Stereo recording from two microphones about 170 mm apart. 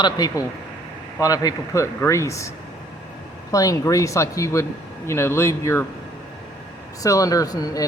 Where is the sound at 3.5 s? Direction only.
20° left (ahead or behind).